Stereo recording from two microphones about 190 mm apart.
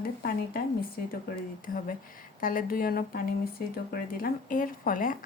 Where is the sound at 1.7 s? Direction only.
50° left (ahead or behind).